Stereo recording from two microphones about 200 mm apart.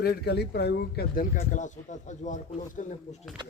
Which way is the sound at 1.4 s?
40° left (ahead or behind).